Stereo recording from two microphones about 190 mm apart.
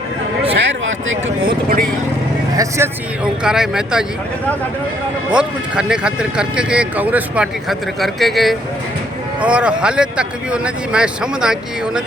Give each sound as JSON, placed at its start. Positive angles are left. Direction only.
{"t": 0.5, "sound": "a sound", "side_deg": -75}
{"t": 2.6, "sound": "speech", "side_deg": -15}
{"t": 3.4, "sound": "speech", "side_deg": -5}
{"t": 5.3, "sound": "speech", "side_deg": -5}